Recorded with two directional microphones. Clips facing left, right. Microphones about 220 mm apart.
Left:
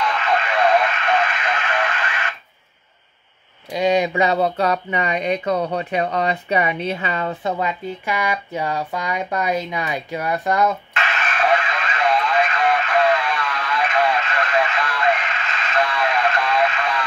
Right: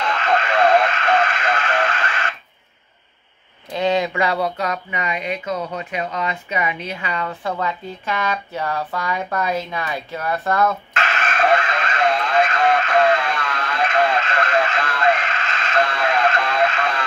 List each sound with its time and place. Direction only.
0.0 s radio: 45° right (ahead or behind)
3.7 s speech: 15° left (ahead or behind)
11.0 s radio: 45° right (ahead or behind)